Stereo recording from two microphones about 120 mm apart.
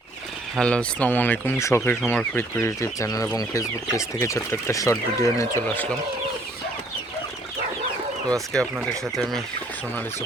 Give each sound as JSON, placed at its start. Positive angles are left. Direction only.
{"t": 0.5, "sound": "speech", "side_deg": 10}
{"t": 8.5, "sound": "speech", "side_deg": 5}